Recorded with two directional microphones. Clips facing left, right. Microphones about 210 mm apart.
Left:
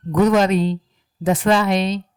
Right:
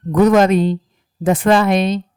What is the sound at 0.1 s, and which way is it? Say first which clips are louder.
Speech: right 4 dB; 50° right (ahead or behind).